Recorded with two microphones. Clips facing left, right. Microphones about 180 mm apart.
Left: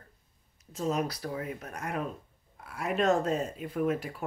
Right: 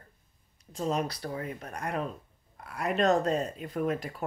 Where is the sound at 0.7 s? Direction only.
5° left (ahead or behind).